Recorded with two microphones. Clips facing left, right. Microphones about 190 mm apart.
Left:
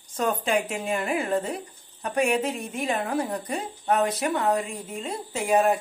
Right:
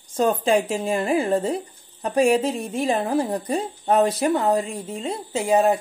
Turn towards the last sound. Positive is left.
turn(degrees=-25)  # may be behind; listen again after turning